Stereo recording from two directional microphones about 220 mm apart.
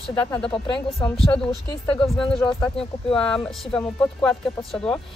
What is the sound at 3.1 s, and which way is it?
Speech, 5° left (ahead or behind).